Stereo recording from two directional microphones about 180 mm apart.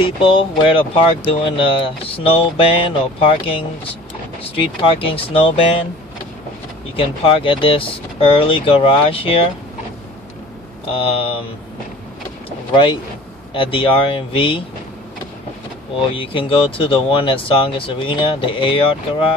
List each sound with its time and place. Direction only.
0.0 s speech: 30° left (ahead or behind)
7.0 s speech: 30° left (ahead or behind)
10.9 s speech: 30° left (ahead or behind)
12.4 s vehicle: 30° left (ahead or behind)
13.5 s speech: 30° left (ahead or behind)
16.1 s speech: 30° left (ahead or behind)